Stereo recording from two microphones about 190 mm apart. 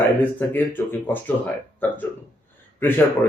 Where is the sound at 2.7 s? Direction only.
10° left (ahead or behind).